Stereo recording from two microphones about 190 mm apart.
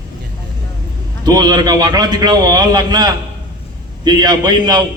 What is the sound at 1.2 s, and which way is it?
A man's voice, 20° right (ahead or behind).